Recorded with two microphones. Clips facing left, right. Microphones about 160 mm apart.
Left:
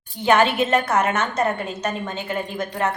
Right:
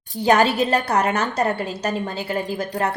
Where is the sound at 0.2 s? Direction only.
40° right (ahead or behind).